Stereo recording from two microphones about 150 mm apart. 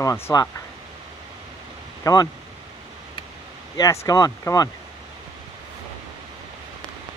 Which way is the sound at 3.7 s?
20° left (ahead or behind).